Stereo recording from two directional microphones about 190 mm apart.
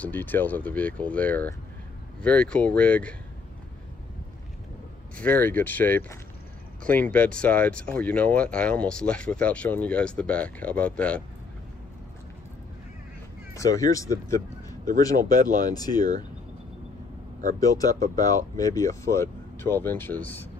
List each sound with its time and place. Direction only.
0.0 s speech: 10° left (ahead or behind)
5.1 s speech: 10° left (ahead or behind)
13.6 s speech: 20° left (ahead or behind)
15.3 s speech: 45° right (ahead or behind)
15.7 s speech: 20° left (ahead or behind)
17.6 s speech: 20° left (ahead or behind)